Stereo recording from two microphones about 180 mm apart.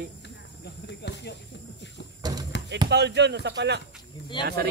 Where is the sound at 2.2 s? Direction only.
20° right (ahead or behind).